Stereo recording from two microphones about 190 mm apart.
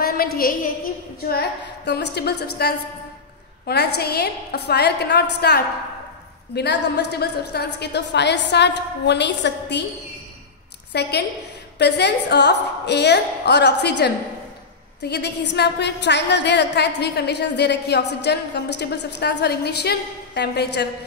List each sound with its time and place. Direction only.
0.0 s a woman's voice: 50° left (ahead or behind)
10.9 s a woman's voice: 60° left (ahead or behind)